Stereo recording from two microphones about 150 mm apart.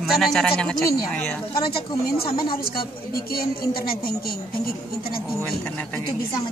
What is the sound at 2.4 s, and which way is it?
Speech, 85° left.